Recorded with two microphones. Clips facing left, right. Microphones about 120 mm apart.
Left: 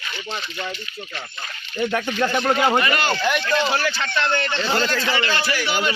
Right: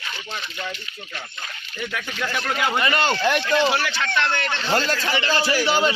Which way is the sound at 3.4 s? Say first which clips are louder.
Right 1 dB; 10° right (ahead or behind).